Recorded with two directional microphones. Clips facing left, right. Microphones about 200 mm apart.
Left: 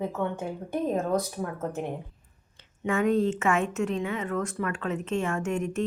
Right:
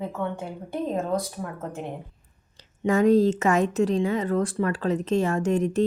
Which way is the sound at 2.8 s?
35° right (ahead or behind).